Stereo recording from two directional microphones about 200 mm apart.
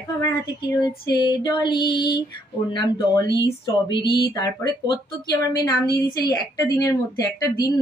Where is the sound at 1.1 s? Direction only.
20° left (ahead or behind).